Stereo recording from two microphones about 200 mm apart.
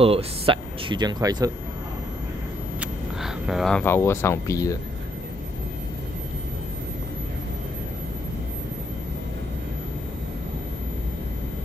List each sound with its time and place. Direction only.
0.0 s speech: 30° right (ahead or behind)
2.8 s speech: centre (ahead or behind); by 4.7 s 15° left (ahead or behind)